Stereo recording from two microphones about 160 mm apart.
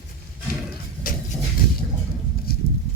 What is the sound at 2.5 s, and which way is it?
Horse, 70° left (ahead or behind).